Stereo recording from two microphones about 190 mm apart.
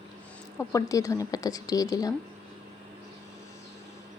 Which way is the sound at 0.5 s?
15° left (ahead or behind).